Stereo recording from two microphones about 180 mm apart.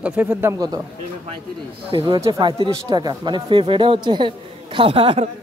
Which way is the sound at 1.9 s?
30° right (ahead or behind).